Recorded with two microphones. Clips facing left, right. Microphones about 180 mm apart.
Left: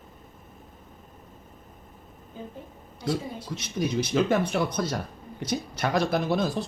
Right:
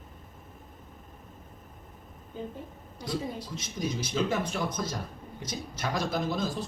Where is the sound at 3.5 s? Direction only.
65° left (ahead or behind).